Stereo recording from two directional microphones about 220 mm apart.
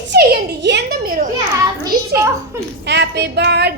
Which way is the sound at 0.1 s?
50° right (ahead or behind).